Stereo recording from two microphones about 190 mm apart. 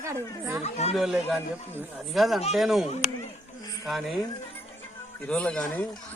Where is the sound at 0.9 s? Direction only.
Centre (ahead or behind).